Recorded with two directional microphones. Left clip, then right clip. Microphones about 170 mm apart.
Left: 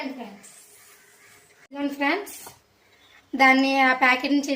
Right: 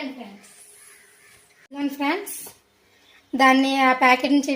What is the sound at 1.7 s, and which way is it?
Speech, 45° right (ahead or behind).